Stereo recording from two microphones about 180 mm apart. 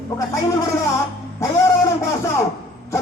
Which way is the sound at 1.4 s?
15° left (ahead or behind).